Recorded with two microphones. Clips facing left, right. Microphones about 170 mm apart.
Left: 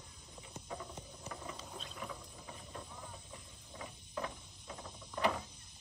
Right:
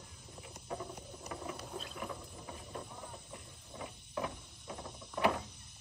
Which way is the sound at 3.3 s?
5° right (ahead or behind).